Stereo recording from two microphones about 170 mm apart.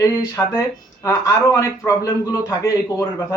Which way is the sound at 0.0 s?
15° left (ahead or behind).